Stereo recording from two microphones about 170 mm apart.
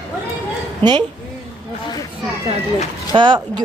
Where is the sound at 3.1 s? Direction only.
30° right (ahead or behind).